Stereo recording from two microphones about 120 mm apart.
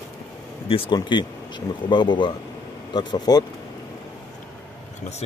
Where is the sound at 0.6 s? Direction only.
50° left (ahead or behind).